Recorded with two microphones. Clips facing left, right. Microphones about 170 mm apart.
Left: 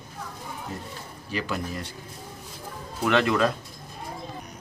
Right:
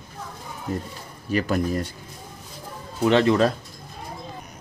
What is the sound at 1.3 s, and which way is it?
Speech, 45° right (ahead or behind).